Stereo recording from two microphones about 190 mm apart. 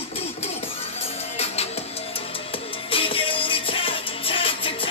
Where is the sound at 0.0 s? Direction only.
30° left (ahead or behind).